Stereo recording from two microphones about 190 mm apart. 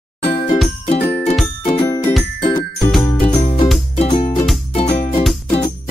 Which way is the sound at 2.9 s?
5° left (ahead or behind).